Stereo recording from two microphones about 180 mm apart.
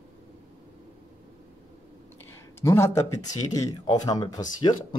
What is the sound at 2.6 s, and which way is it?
Speech, 15° left (ahead or behind).